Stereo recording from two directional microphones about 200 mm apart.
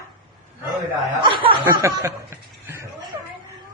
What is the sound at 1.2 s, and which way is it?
Speech, 25° right (ahead or behind).